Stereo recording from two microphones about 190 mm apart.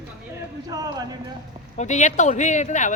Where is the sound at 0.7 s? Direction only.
20° right (ahead or behind).